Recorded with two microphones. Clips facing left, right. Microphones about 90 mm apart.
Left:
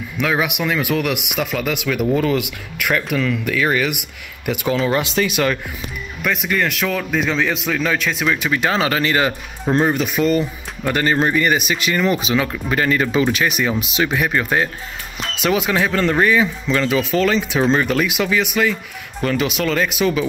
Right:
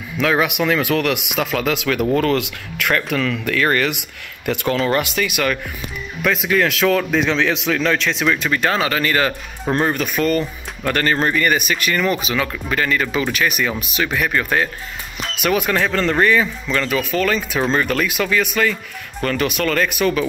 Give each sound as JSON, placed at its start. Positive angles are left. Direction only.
{"t": 0.2, "sound": "a man's voice", "side_deg": 5}
{"t": 5.0, "sound": "speech", "side_deg": 30}
{"t": 6.2, "sound": "a man's voice", "side_deg": 0}
{"t": 8.7, "sound": "speech", "side_deg": 25}